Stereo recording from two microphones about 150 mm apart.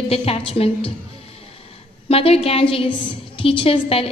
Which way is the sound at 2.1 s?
40° left (ahead or behind).